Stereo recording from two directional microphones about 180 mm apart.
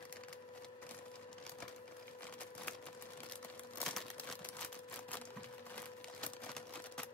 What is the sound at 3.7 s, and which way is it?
Crumpling, 5° left (ahead or behind).